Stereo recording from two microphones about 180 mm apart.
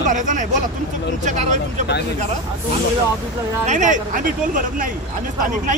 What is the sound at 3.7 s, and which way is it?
Speech, 45° right (ahead or behind).